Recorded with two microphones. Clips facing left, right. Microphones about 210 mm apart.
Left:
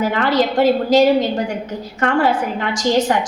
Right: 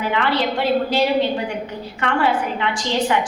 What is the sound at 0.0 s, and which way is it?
A woman's voice, 40° left (ahead or behind).